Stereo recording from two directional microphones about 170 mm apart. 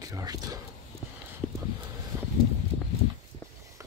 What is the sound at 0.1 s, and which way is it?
Speech, 20° right (ahead or behind).